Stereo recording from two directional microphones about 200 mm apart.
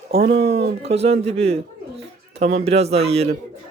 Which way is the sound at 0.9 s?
30° right (ahead or behind).